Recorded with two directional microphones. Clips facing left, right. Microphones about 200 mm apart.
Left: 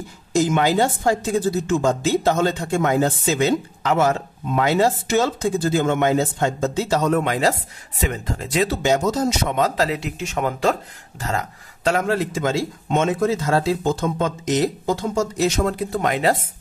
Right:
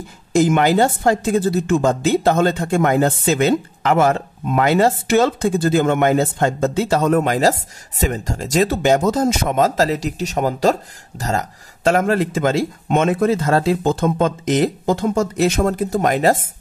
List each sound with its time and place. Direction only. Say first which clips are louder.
0.3 s a woman's voice: right 4 dB; 55° right (ahead or behind)